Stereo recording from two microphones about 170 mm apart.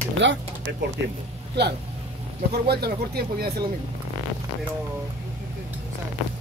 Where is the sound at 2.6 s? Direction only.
65° right (ahead or behind).